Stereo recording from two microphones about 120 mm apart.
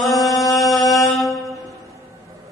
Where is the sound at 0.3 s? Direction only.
30° left (ahead or behind).